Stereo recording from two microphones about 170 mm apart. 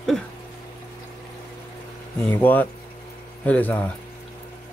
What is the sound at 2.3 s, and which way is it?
Speech, 10° left (ahead or behind).